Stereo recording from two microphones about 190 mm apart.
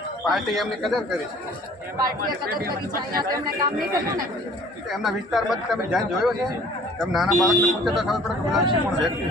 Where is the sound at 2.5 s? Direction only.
50° right (ahead or behind).